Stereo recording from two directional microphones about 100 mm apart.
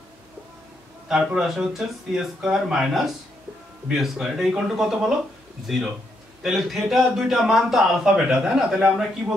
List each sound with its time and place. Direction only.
1.0 s a man's voice: 5° right (ahead or behind)
6.4 s a man's voice: centre (ahead or behind)